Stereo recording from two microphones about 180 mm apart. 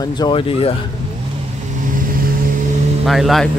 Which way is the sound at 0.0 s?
25° left (ahead or behind).